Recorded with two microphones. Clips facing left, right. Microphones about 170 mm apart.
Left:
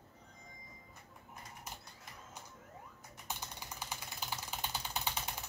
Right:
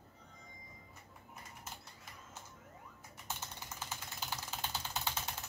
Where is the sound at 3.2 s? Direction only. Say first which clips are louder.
Left 1 dB; 15° left (ahead or behind).